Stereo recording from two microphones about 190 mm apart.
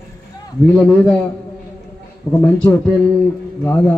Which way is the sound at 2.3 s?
10° left (ahead or behind).